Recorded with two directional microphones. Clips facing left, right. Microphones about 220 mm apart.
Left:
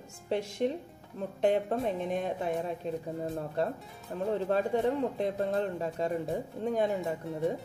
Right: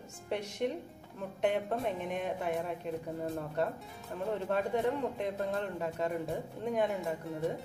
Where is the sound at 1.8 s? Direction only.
35° left (ahead or behind).